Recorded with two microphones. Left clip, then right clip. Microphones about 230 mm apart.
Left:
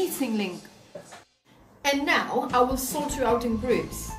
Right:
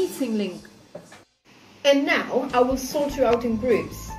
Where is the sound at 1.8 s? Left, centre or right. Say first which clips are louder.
Right 4 dB; left.